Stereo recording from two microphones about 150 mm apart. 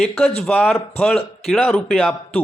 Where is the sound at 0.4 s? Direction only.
5° left (ahead or behind).